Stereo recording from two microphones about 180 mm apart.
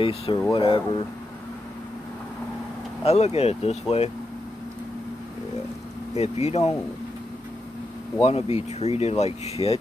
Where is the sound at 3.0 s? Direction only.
35° left (ahead or behind).